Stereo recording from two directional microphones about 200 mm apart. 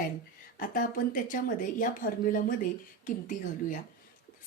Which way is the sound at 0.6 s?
45° left (ahead or behind).